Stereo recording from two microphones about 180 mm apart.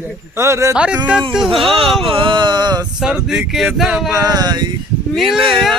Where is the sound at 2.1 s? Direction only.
30° right (ahead or behind).